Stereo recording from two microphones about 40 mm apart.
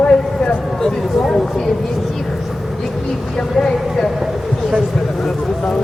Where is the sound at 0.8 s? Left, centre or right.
Centre.